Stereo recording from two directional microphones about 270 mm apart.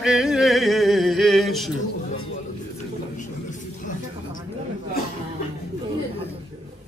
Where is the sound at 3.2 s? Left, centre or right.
Left.